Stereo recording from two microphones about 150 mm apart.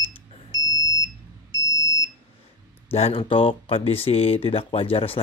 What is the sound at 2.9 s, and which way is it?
Speech, 40° left (ahead or behind).